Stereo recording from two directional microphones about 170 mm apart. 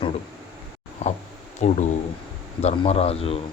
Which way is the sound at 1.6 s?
40° left (ahead or behind).